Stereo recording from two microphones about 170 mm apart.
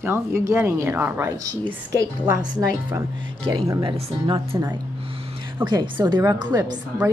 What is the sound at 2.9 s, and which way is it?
A woman's voice, 25° right (ahead or behind).